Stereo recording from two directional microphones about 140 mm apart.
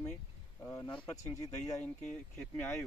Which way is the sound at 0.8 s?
35° left (ahead or behind).